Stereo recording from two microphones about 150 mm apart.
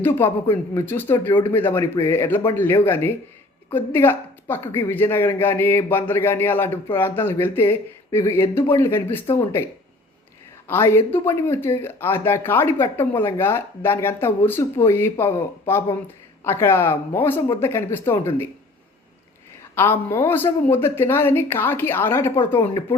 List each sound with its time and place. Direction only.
0.2 s speech: 15° left (ahead or behind)
10.7 s speech: 15° left (ahead or behind)
19.7 s speech: 15° left (ahead or behind)